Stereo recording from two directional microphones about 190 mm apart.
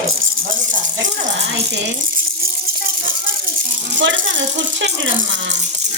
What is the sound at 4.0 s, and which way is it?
Speech, 75° right (ahead or behind).